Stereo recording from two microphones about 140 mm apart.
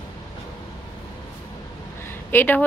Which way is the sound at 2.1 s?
15° left (ahead or behind).